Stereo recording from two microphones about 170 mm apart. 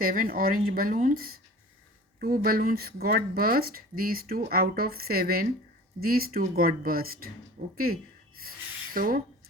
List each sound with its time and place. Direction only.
0.0 s speech: 55° right (ahead or behind)
7.6 s speech: 45° right (ahead or behind)
8.4 s a sound: 60° right (ahead or behind)